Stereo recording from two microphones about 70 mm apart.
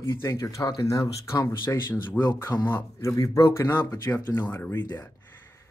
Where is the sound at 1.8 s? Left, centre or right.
Left.